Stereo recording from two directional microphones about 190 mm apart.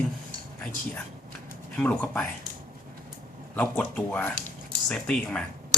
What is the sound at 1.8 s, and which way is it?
Speech, 10° left (ahead or behind).